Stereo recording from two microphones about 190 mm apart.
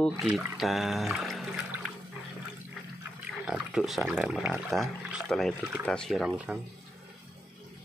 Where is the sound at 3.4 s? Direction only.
5° right (ahead or behind).